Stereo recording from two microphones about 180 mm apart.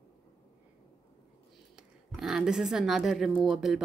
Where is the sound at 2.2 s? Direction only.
5° right (ahead or behind).